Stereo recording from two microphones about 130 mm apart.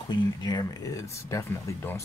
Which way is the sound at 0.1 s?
35° left (ahead or behind).